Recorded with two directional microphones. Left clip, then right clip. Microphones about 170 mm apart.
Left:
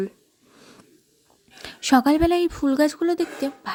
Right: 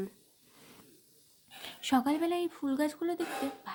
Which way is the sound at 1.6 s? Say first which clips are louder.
Left 11 dB; 40° left (ahead or behind).